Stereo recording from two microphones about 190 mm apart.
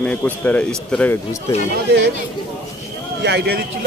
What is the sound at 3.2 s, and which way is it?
Speech, 60° right (ahead or behind).